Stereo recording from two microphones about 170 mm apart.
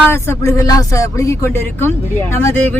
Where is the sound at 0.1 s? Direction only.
15° left (ahead or behind).